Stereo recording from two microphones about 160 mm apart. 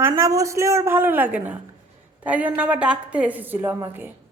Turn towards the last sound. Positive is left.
turn(degrees=-15)  # may be behind; listen again after turning